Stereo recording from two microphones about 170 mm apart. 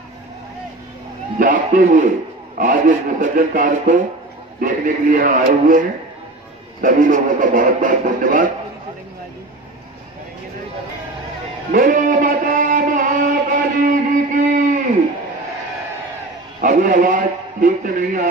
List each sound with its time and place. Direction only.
1.4 s speech: 55° right (ahead or behind)
11.7 s music: 55° right (ahead or behind)
16.6 s a man's voice: 50° right (ahead or behind)